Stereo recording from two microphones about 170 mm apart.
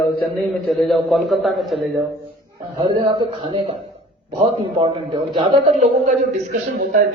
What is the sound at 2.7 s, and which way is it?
A man's voice, 30° right (ahead or behind).